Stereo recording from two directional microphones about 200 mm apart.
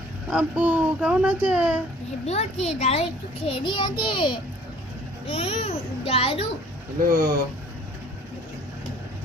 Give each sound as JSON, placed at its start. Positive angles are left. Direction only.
{"t": 0.3, "sound": "speech", "side_deg": -5}
{"t": 2.2, "sound": "a child's voice", "side_deg": 30}
{"t": 7.1, "sound": "speech", "side_deg": -20}